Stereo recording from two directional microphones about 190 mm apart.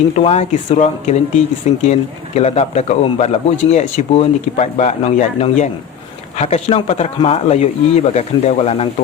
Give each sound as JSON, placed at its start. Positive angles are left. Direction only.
{"t": 0.1, "sound": "speech", "side_deg": 35}